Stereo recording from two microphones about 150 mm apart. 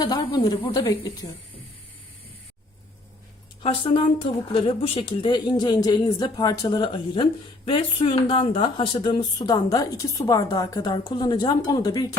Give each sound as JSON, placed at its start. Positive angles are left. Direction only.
{"t": 0.0, "sound": "speech", "side_deg": 30}
{"t": 3.6, "sound": "speech", "side_deg": 35}